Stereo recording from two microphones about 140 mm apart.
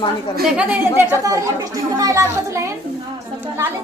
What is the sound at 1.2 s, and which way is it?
A woman's voice, 25° right (ahead or behind).